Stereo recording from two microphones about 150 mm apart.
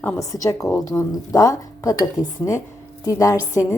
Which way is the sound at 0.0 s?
15° left (ahead or behind).